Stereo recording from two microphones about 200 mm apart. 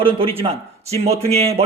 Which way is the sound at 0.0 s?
25° right (ahead or behind).